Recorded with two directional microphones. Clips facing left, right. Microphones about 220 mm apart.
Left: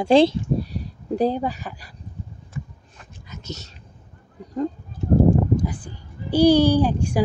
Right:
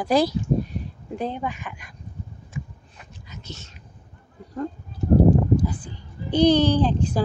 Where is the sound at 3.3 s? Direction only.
40° left (ahead or behind).